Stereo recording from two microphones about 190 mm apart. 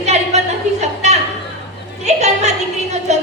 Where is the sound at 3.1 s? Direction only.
35° right (ahead or behind).